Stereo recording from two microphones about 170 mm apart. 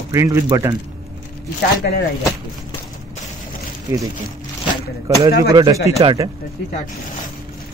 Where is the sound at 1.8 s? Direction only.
70° left (ahead or behind).